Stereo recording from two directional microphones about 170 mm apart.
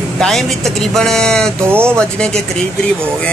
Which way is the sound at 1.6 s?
15° right (ahead or behind).